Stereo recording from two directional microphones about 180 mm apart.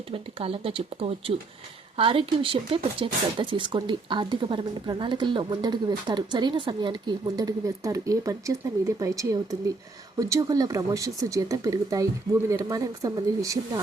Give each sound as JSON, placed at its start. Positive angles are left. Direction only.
{"t": 0.1, "sound": "speech", "side_deg": -30}